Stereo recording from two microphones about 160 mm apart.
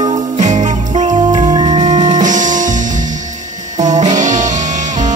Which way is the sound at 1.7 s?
45° right (ahead or behind).